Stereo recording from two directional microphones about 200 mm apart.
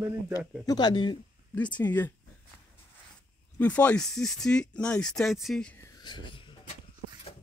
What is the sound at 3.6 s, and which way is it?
Speech, 5° left (ahead or behind).